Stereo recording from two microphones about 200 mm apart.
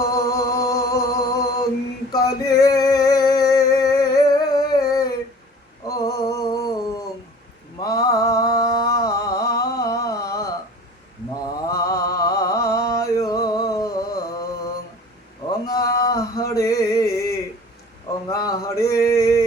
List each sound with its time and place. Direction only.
0.0 s music: 15° left (ahead or behind)
2.1 s male singing: 20° left (ahead or behind)
5.9 s music: 15° left (ahead or behind)
7.8 s a sound: 20° left (ahead or behind)
11.3 s mantra: 15° left (ahead or behind)
15.6 s a sound: 20° left (ahead or behind)
18.3 s male singing: 20° left (ahead or behind)